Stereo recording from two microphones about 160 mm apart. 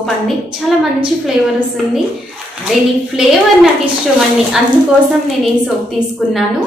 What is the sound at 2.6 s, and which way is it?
A woman's voice, 5° right (ahead or behind).